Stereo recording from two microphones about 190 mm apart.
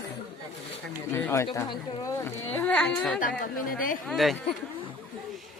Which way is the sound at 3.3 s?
50° left (ahead or behind).